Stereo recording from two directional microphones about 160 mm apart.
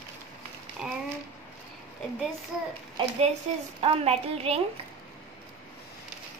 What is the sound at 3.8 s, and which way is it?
Speech, 40° right (ahead or behind).